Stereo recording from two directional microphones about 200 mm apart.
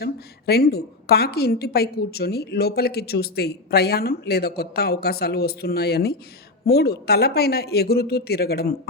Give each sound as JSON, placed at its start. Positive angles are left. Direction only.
{"t": 0.0, "sound": "a woman's voice", "side_deg": 55}